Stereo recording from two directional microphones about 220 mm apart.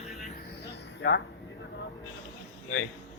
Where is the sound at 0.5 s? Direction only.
50° left (ahead or behind).